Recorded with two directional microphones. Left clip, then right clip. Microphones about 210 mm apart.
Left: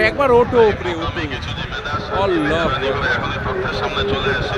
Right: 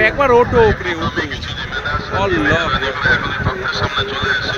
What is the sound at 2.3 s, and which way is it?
Speech, 30° left (ahead or behind).